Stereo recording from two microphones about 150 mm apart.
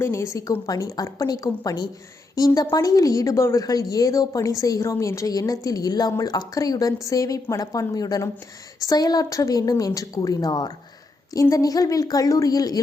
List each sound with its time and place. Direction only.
0.0 s a woman's voice: 20° left (ahead or behind)